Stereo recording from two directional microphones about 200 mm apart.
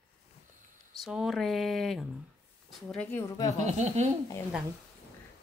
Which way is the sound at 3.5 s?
35° right (ahead or behind).